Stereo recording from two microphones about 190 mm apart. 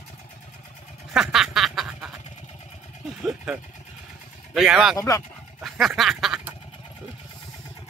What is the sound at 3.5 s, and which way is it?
Speech, centre (ahead or behind).